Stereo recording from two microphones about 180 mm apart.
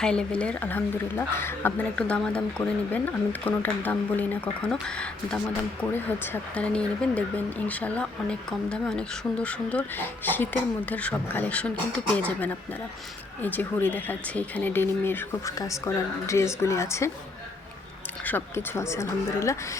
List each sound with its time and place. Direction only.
0.0 s speech: 5° left (ahead or behind)
18.3 s speech: 10° left (ahead or behind)